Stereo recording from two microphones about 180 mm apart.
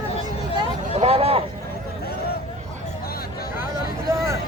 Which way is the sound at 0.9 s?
35° right (ahead or behind).